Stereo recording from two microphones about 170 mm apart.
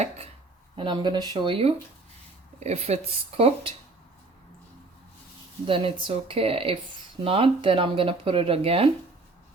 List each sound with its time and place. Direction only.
0.8 s speech: 25° right (ahead or behind)
5.6 s speech: 30° right (ahead or behind)